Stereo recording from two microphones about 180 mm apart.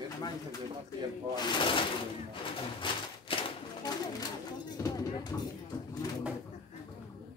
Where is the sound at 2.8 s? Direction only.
30° left (ahead or behind).